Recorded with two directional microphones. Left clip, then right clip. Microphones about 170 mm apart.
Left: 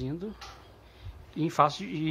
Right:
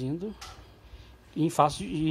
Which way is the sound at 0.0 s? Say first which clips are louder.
Right 2 dB; 20° right (ahead or behind).